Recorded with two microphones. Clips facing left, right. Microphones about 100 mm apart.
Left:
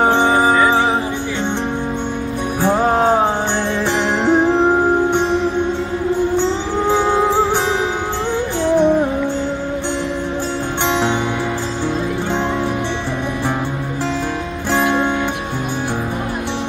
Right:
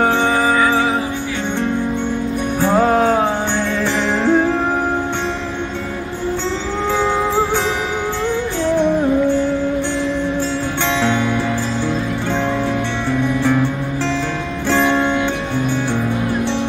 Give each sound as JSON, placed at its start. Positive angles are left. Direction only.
{"t": 0.0, "sound": "music", "side_deg": 20}
{"t": 2.6, "sound": "music", "side_deg": 15}
{"t": 4.3, "sound": "music", "side_deg": 20}
{"t": 13.4, "sound": "music", "side_deg": 15}
{"t": 14.7, "sound": "music", "side_deg": 10}